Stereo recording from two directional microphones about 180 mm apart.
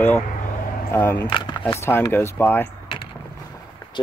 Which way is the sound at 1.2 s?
25° left (ahead or behind).